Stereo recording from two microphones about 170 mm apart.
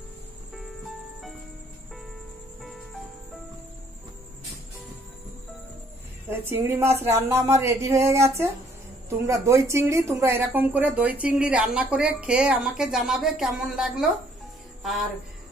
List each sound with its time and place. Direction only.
6.3 s speech: 15° right (ahead or behind)